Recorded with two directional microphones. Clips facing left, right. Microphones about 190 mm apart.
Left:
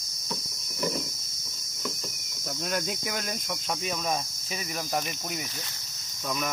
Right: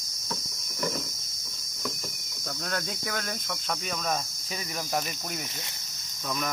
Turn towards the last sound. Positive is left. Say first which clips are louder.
# left 1 dB
turn(degrees=5)  # may be behind; listen again after turning